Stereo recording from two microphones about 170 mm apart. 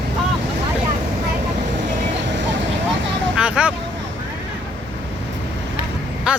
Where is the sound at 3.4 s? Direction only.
5° right (ahead or behind).